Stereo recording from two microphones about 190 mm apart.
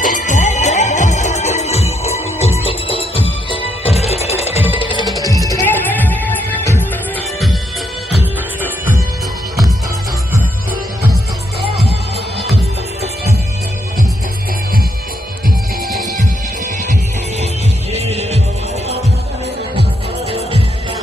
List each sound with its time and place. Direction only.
0.0 s music: 40° left (ahead or behind); by 6.9 s 10° left (ahead or behind)
17.9 s music: 35° right (ahead or behind)
20.2 s music: 30° right (ahead or behind)